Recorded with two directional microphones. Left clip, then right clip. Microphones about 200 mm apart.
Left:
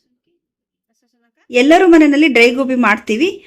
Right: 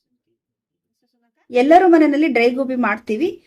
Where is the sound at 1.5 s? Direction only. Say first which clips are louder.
Left 2 dB; 30° left (ahead or behind).